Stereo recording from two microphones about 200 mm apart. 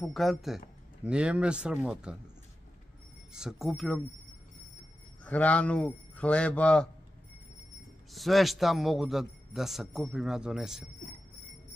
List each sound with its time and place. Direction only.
0.0 s a man's voice: centre (ahead or behind)
3.3 s a man's voice: centre (ahead or behind)
5.2 s speech: 5° left (ahead or behind)
8.1 s a man's voice: centre (ahead or behind)